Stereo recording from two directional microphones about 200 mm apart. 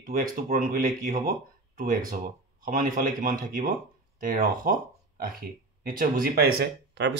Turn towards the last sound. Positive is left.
turn(degrees=-60)  # may be behind; listen again after turning